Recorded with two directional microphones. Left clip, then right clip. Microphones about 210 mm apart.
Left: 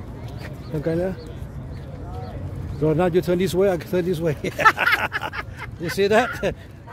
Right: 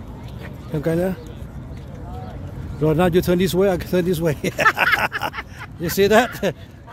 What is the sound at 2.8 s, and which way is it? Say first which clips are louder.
Speech: right 2 dB; 20° right (ahead or behind).